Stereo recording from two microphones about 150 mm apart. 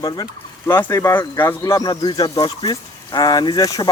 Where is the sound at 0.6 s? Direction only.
15° left (ahead or behind).